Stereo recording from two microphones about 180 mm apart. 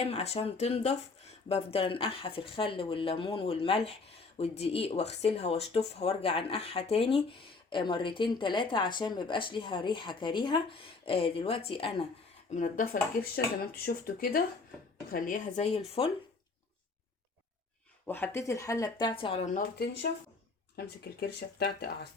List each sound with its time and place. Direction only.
0.0 s speech: 35° left (ahead or behind)
12.5 s speech: 45° left (ahead or behind)
18.0 s speech: 10° left (ahead or behind)
19.2 s speech: 35° left (ahead or behind)
20.7 s speech: 60° left (ahead or behind)